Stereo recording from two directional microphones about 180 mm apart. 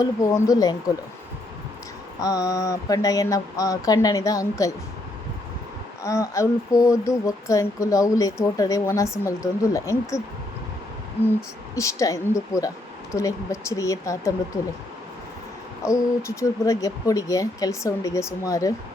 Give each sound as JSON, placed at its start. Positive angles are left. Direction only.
{"t": 0.0, "sound": "speech", "side_deg": 20}
{"t": 2.2, "sound": "speech", "side_deg": 20}
{"t": 6.0, "sound": "speech", "side_deg": 20}
{"t": 11.7, "sound": "speech", "side_deg": 15}
{"t": 15.8, "sound": "speech", "side_deg": 15}